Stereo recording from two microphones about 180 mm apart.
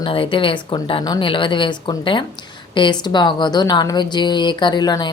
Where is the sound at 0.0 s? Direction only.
30° left (ahead or behind).